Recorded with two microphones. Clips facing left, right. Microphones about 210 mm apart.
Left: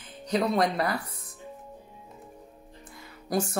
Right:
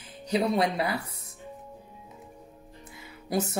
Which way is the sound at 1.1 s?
25° right (ahead or behind).